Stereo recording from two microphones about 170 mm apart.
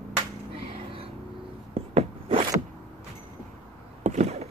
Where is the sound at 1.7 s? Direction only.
35° right (ahead or behind).